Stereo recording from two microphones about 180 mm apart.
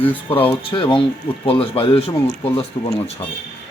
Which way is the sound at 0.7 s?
30° left (ahead or behind).